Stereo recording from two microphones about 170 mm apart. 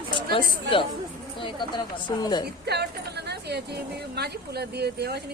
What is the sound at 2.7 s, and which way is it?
Speech, 75° right (ahead or behind).